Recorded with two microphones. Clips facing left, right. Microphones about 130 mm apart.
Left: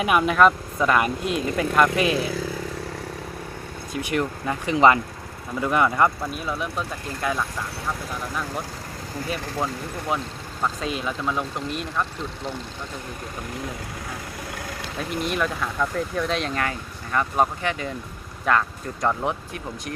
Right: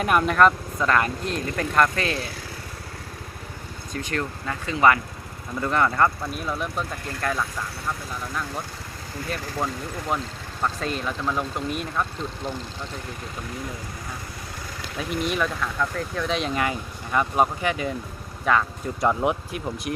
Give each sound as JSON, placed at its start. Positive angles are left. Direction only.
{"t": 0.0, "sound": "speech", "side_deg": 5}
{"t": 3.9, "sound": "speech", "side_deg": 15}
{"t": 10.1, "sound": "speech", "side_deg": 5}
{"t": 15.2, "sound": "speech", "side_deg": 0}
{"t": 15.6, "sound": "speech", "side_deg": 10}
{"t": 19.0, "sound": "speech", "side_deg": -10}